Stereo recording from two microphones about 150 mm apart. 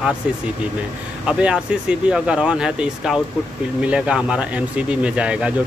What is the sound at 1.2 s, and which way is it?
Speech, 5° right (ahead or behind).